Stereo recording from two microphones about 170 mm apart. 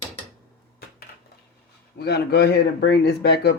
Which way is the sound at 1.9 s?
75° left (ahead or behind).